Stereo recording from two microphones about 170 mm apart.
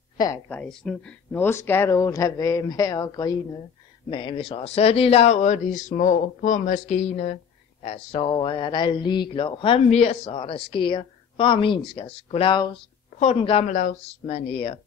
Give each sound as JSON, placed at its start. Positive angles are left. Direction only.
{"t": 0.5, "sound": "speech", "side_deg": 5}
{"t": 7.8, "sound": "a sound", "side_deg": 35}
{"t": 13.7, "sound": "speech", "side_deg": 45}